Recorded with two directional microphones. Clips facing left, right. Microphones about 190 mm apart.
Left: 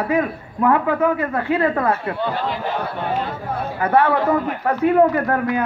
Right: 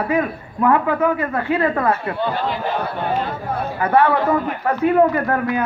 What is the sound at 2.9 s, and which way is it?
Speech, 45° right (ahead or behind).